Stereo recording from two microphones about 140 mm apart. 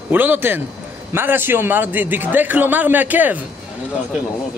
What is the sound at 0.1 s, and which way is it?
A man's voice, 15° right (ahead or behind).